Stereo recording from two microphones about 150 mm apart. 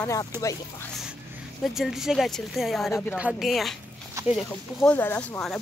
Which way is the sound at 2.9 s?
15° left (ahead or behind).